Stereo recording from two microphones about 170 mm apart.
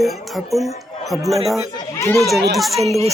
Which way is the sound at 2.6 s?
Centre (ahead or behind).